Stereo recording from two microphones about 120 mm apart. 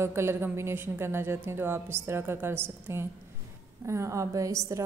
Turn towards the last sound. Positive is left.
turn(degrees=-25)  # may be behind; listen again after turning